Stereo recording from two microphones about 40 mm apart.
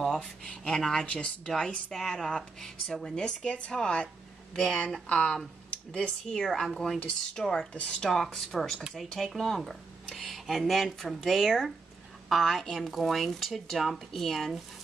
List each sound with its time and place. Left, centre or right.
0.0 s speech: centre
3.2 s speech: left
6.3 s speech: centre
7.7 s speech: left
8.0 s speech: centre